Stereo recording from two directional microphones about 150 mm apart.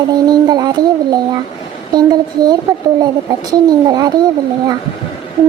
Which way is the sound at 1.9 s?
25° right (ahead or behind).